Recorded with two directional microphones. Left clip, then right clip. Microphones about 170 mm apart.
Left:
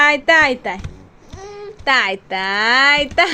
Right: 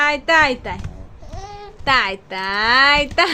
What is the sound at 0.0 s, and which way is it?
Speech, 20° left (ahead or behind).